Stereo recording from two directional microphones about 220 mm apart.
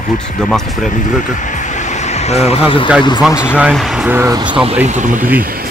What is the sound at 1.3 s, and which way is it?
Vehicle, 35° left (ahead or behind).